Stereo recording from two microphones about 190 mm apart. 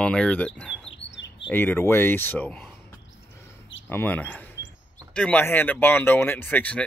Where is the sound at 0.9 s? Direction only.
70° left (ahead or behind).